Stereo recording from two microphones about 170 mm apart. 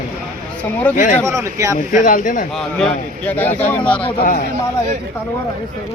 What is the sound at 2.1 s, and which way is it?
Speech, 50° left (ahead or behind).